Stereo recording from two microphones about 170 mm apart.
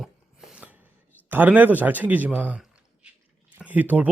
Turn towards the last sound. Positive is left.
turn(degrees=-10)  # may be behind; listen again after turning